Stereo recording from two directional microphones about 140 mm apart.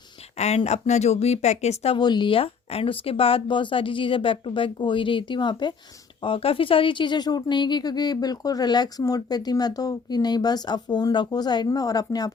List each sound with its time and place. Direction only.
0.3 s speech: 50° left (ahead or behind)
2.0 s speech: 30° left (ahead or behind)